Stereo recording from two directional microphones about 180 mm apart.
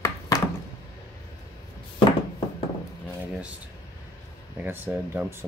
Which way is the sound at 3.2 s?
5° right (ahead or behind).